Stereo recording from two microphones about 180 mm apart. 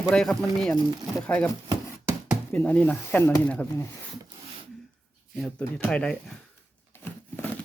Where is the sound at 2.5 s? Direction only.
10° left (ahead or behind).